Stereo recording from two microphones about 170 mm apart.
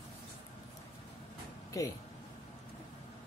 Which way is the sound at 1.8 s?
20° left (ahead or behind).